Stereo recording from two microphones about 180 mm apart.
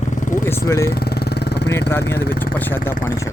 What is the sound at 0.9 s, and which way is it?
Vehicle, 60° left (ahead or behind).